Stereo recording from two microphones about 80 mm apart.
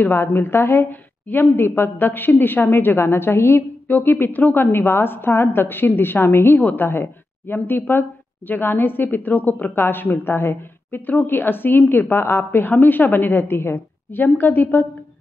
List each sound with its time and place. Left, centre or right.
0.0 s a woman's voice: left